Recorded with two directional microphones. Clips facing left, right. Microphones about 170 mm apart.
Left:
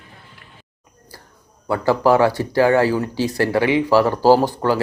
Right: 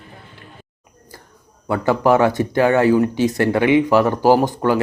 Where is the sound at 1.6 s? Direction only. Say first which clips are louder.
Even; 20° right (ahead or behind).